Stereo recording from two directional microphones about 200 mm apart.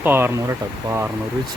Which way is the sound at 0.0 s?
10° right (ahead or behind).